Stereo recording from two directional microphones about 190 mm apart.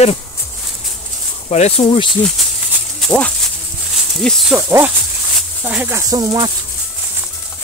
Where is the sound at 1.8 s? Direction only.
25° left (ahead or behind).